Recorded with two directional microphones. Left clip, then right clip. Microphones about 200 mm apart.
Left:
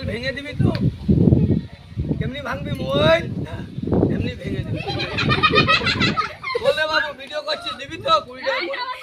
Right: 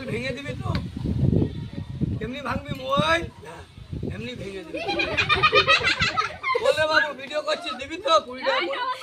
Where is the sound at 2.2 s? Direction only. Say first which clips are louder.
Even; 10° right (ahead or behind).